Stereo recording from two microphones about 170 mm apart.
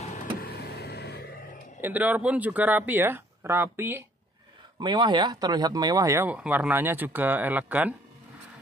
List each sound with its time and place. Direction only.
0.4 s vehicle: 65° left (ahead or behind)
1.8 s speech: 10° right (ahead or behind)
4.7 s speech: 25° right (ahead or behind); by 7.9 s 10° right (ahead or behind)